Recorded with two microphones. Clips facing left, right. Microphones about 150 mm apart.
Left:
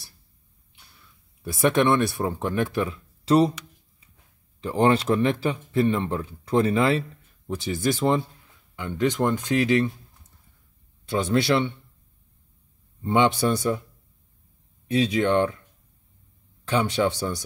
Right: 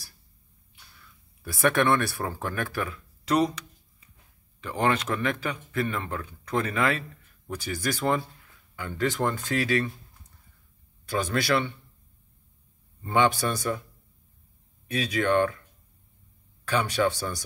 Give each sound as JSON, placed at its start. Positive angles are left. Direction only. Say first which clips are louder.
{"t": 1.4, "sound": "speech", "louder": "left 3 dB", "side_deg": 20}
{"t": 4.6, "sound": "speech", "louder": "left 5 dB", "side_deg": 30}
{"t": 11.1, "sound": "speech", "louder": "left 4 dB", "side_deg": 25}
{"t": 13.0, "sound": "speech", "louder": "left 3 dB", "side_deg": 20}
{"t": 14.9, "sound": "speech", "louder": "left 4 dB", "side_deg": 25}
{"t": 16.6, "sound": "speech", "louder": "left 2 dB", "side_deg": 25}